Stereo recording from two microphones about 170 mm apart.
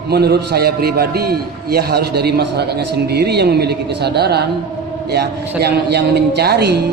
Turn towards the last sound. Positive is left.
turn(degrees=-75)  # may be behind; listen again after turning